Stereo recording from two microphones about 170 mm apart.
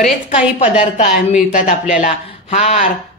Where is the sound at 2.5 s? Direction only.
40° left (ahead or behind).